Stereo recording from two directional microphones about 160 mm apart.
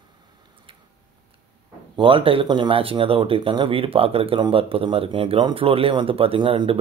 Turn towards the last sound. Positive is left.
turn(degrees=-35)  # may be behind; listen again after turning